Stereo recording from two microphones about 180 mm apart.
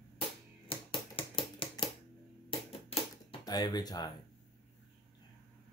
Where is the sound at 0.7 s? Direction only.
30° left (ahead or behind).